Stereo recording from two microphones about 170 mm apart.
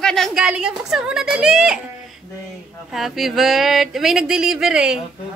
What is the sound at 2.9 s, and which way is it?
Speech, centre (ahead or behind).